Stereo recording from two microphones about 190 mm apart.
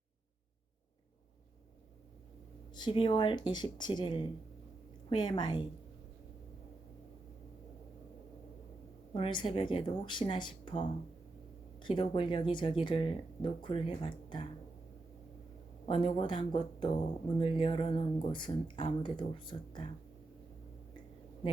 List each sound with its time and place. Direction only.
2.7 s speech: 25° left (ahead or behind)
9.1 s speech: 25° left (ahead or behind)
15.9 s speech: 25° left (ahead or behind)